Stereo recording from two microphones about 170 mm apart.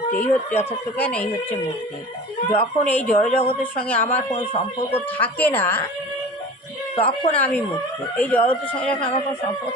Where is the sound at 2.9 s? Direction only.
10° left (ahead or behind).